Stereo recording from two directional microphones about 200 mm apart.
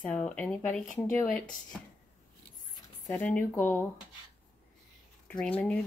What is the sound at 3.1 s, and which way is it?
Speech, 10° left (ahead or behind).